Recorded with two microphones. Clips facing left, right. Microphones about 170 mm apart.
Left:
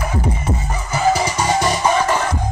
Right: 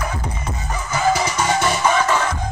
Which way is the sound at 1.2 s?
35° left (ahead or behind).